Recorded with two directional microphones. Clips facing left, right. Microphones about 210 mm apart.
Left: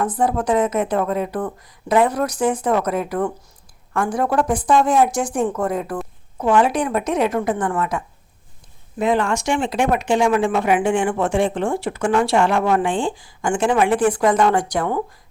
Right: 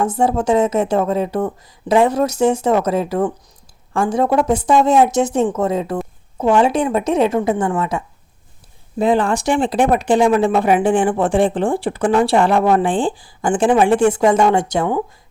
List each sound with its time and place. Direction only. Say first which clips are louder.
0.0 s speech: right 3 dB; 25° right (ahead or behind)
7.3 s a woman's voice: right 4 dB; 15° right (ahead or behind)
7.8 s speech: right 2 dB; 25° right (ahead or behind)